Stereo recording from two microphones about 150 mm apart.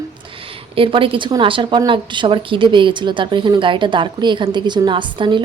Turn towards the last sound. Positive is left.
turn(degrees=-35)  # may be behind; listen again after turning